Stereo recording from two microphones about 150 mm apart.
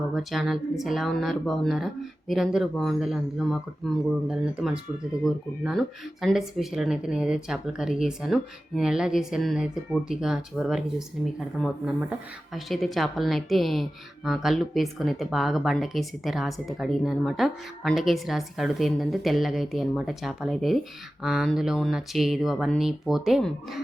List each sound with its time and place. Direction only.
0.1 s speech: centre (ahead or behind)